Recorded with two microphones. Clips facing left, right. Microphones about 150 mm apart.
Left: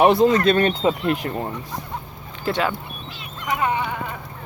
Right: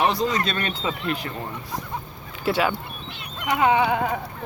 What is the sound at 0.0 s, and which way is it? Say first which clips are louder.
Speech: left 8 dB; 55° left (ahead or behind).